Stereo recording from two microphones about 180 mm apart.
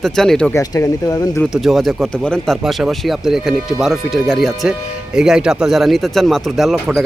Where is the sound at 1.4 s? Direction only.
Centre (ahead or behind).